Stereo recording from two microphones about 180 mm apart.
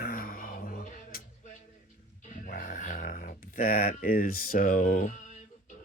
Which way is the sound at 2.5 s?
45° left (ahead or behind).